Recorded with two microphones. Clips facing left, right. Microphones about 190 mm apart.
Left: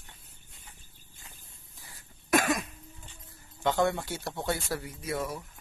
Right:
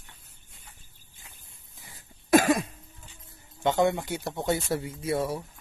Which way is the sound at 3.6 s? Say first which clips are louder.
Right 3 dB; 20° right (ahead or behind).